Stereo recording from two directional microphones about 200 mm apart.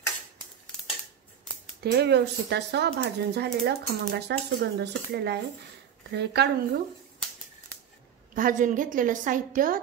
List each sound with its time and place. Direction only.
1.8 s speech: 55° right (ahead or behind)
8.4 s a woman's voice: 40° right (ahead or behind)